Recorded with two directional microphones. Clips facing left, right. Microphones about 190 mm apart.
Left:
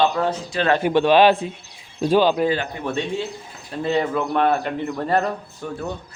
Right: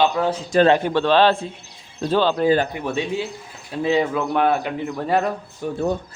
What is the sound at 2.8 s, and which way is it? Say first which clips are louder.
A man's voice: right 1 dB; 5° right (ahead or behind).